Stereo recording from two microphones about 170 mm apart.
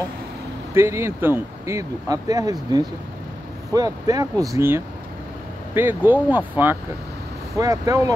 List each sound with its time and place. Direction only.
0.7 s speech: 15° right (ahead or behind)
3.7 s speech: 20° right (ahead or behind)